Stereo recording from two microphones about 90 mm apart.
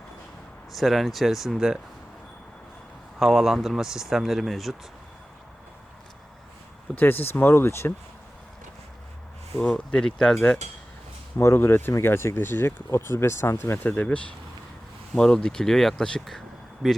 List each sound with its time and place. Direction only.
0.7 s speech: centre (ahead or behind)
3.2 s speech: 5° right (ahead or behind)
7.0 s speech: 20° left (ahead or behind)
9.6 s speech: 10° left (ahead or behind)
11.3 s speech: 30° left (ahead or behind)
13.9 s speech: 15° left (ahead or behind)